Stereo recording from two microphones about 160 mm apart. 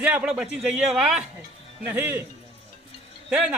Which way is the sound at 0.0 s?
10° right (ahead or behind).